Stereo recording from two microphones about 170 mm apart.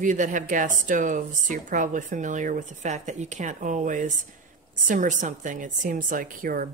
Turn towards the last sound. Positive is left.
turn(degrees=-55)  # may be behind; listen again after turning